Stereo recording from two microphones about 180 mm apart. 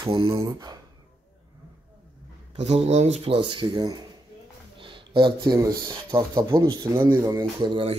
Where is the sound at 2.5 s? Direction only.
35° right (ahead or behind).